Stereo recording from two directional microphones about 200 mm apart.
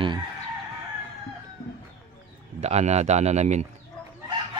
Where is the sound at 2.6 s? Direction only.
35° right (ahead or behind).